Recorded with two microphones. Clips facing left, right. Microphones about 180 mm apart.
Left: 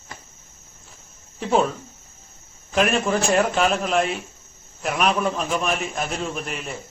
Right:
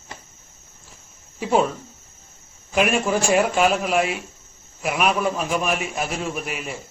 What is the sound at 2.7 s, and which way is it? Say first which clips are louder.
A man's voice: even; 5° right (ahead or behind).